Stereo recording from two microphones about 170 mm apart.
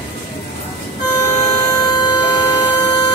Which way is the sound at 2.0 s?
25° left (ahead or behind).